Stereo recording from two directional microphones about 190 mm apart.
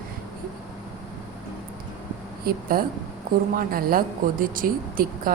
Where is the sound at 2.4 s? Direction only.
50° right (ahead or behind).